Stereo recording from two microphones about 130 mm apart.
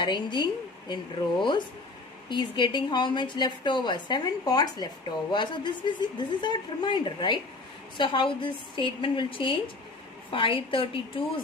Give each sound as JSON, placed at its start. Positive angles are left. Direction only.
{"t": 0.0, "sound": "a woman's voice", "side_deg": 35}
{"t": 2.2, "sound": "a woman's voice", "side_deg": 35}